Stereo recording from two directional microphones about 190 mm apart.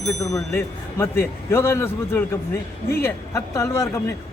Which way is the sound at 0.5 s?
15° left (ahead or behind).